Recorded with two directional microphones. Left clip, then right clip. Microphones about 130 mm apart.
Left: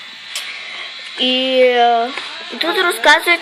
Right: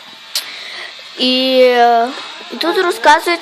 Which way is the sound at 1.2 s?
65° right (ahead or behind).